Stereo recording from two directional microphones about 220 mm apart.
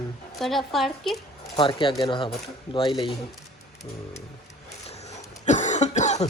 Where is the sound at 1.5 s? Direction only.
25° left (ahead or behind).